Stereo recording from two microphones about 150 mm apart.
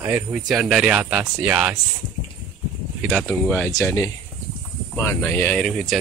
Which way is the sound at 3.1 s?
5° left (ahead or behind).